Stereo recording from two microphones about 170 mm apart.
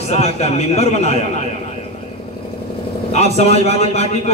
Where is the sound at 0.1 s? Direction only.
40° left (ahead or behind).